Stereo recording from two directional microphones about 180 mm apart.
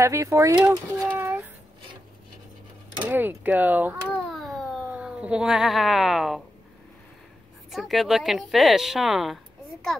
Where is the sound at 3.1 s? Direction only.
10° right (ahead or behind).